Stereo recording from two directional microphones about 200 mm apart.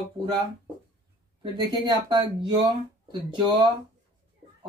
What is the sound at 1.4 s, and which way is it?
Speech, 20° right (ahead or behind).